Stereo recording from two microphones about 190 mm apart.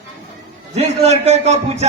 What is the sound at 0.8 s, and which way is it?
A man's voice, 35° right (ahead or behind).